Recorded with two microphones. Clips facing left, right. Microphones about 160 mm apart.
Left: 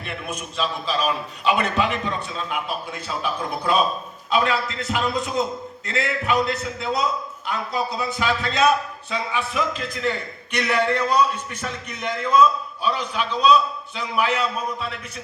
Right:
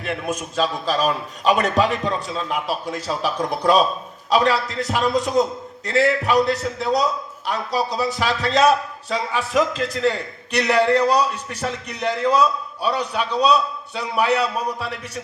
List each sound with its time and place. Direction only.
0.3 s a man's voice: 45° right (ahead or behind)
14.3 s a man's voice: 35° right (ahead or behind)